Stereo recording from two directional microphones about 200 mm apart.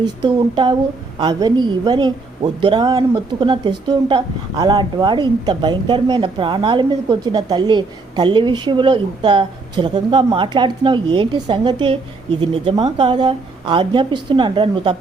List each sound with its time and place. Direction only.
0.0 s a woman's voice: 20° right (ahead or behind)